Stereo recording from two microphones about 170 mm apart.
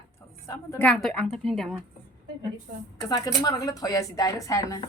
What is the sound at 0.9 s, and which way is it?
Speech, 5° left (ahead or behind).